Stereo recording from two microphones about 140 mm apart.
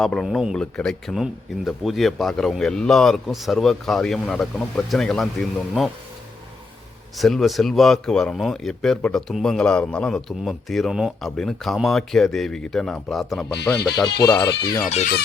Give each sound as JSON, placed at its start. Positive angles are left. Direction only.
{"t": 0.0, "sound": "speech", "side_deg": 0}
{"t": 7.2, "sound": "speech", "side_deg": 0}
{"t": 13.9, "sound": "speech", "side_deg": 30}